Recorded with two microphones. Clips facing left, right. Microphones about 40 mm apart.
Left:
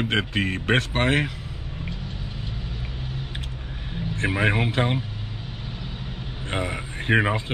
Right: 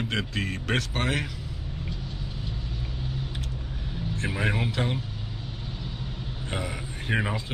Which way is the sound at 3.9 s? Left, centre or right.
Left.